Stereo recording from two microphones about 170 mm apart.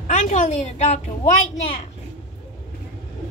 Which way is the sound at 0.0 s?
45° left (ahead or behind).